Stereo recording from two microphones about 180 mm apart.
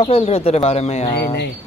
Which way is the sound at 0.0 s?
35° left (ahead or behind).